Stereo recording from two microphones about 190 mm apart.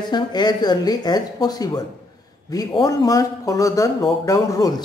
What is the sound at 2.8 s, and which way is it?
Speech, 20° left (ahead or behind).